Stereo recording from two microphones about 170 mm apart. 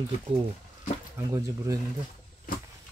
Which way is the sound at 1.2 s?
20° right (ahead or behind).